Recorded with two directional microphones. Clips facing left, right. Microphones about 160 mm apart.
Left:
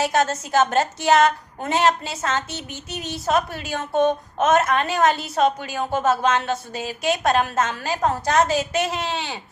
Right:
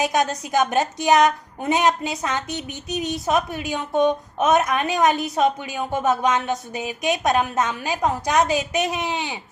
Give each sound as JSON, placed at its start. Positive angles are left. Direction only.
{"t": 0.0, "sound": "a woman's voice", "side_deg": -15}